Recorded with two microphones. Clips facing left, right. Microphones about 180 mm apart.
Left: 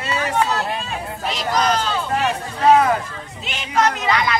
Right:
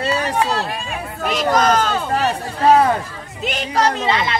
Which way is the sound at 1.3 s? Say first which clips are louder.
Right 4 dB; 50° right (ahead or behind).